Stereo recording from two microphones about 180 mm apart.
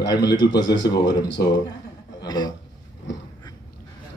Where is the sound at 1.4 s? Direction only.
55° left (ahead or behind).